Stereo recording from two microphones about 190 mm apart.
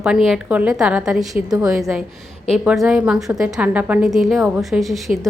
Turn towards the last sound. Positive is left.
turn(degrees=0)  # may be behind; listen again after turning